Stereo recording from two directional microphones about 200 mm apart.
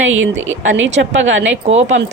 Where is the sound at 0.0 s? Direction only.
75° right (ahead or behind).